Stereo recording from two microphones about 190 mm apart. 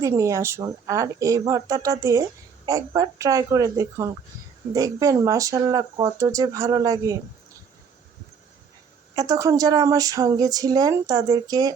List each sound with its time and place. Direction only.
0.0 s speech: 15° right (ahead or behind)
9.1 s speech: 20° right (ahead or behind)